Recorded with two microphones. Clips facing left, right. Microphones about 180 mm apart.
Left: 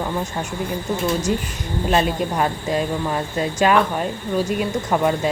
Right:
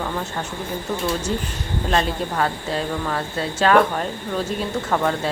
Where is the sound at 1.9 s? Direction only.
10° left (ahead or behind).